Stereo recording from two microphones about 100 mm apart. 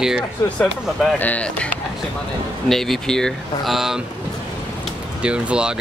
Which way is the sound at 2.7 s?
5° left (ahead or behind).